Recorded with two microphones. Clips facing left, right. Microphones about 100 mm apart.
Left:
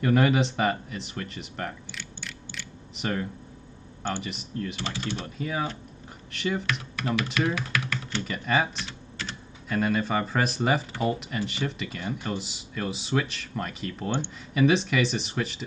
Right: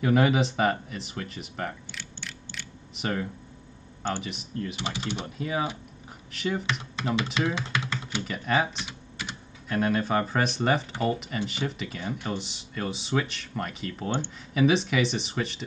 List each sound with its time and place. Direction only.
0.0 s speech: 5° right (ahead or behind)
4.7 s speech: 15° right (ahead or behind); by 6.6 s centre (ahead or behind)
6.6 s speech: 25° right (ahead or behind)
7.3 s typing: 25° right (ahead or behind)
8.1 s speech: centre (ahead or behind)
8.8 s typing: 10° right (ahead or behind)
9.7 s speech: centre (ahead or behind)